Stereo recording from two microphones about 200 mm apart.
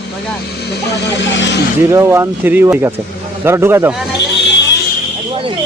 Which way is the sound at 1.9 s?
15° right (ahead or behind).